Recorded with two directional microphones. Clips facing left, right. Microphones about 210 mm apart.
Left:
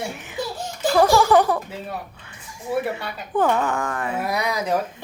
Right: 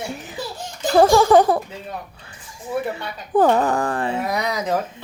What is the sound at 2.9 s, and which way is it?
Speech, 35° right (ahead or behind).